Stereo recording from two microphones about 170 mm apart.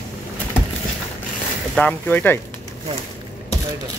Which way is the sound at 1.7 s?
10° left (ahead or behind).